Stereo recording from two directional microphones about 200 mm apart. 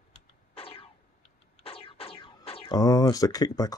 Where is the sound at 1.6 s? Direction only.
30° left (ahead or behind).